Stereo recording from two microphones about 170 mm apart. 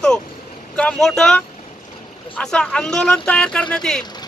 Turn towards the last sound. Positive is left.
turn(degrees=5)  # may be behind; listen again after turning